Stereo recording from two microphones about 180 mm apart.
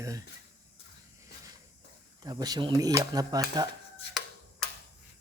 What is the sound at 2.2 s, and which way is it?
Speech, 20° right (ahead or behind).